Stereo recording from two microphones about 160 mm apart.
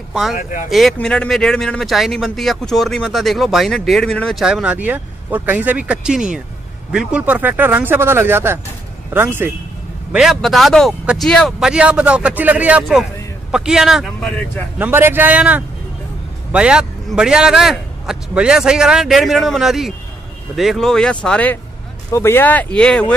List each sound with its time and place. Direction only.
0.1 s speech: centre (ahead or behind)
0.4 s speech: 55° left (ahead or behind)
0.7 s a man's voice: centre (ahead or behind)
10.1 s a man's voice: centre (ahead or behind)
14.8 s a man's voice: 15° right (ahead or behind); by 23.1 s 5° left (ahead or behind)